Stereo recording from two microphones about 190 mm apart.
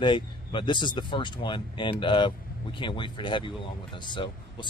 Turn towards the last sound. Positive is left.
turn(degrees=25)  # may be behind; listen again after turning